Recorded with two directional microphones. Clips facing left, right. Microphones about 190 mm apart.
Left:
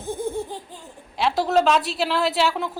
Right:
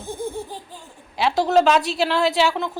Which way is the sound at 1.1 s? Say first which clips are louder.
Right 2 dB; centre (ahead or behind).